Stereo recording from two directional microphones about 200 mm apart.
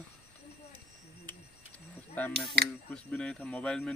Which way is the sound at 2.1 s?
10° left (ahead or behind).